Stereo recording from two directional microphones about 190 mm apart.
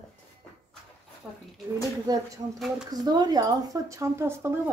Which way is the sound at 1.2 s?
5° right (ahead or behind).